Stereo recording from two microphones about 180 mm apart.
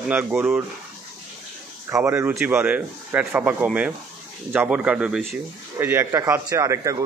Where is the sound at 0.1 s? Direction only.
10° right (ahead or behind).